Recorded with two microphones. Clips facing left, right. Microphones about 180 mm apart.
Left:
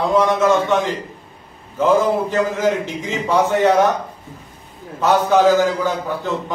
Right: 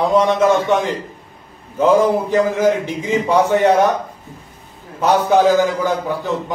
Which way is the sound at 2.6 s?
15° right (ahead or behind).